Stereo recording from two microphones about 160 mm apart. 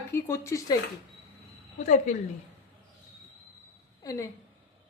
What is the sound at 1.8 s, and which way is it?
Speech, 45° left (ahead or behind).